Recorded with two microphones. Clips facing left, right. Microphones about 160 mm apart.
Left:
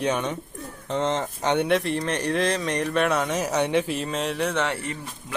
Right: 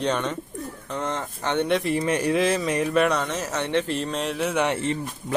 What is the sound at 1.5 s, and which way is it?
Speech, centre (ahead or behind).